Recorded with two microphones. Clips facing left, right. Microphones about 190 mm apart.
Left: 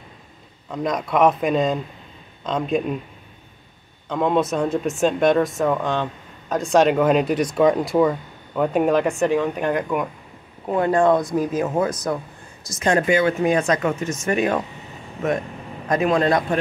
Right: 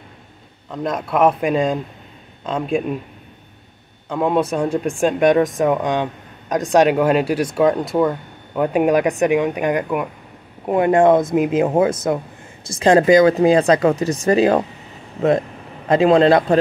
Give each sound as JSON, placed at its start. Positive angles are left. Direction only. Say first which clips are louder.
{"t": 0.7, "sound": "a man's voice", "louder": "right 1 dB", "side_deg": -5}
{"t": 4.1, "sound": "speech", "louder": "right 2 dB", "side_deg": -10}
{"t": 10.7, "sound": "speech", "louder": "right 4 dB", "side_deg": -20}
{"t": 15.9, "sound": "speech", "louder": "right 6 dB", "side_deg": -30}